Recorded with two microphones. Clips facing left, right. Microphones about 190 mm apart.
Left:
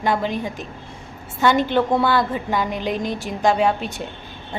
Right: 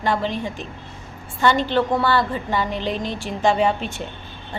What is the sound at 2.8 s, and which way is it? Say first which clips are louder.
Speech: left 1 dB; 50° left (ahead or behind).